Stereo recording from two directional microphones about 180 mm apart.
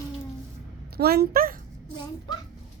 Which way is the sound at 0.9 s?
60° right (ahead or behind).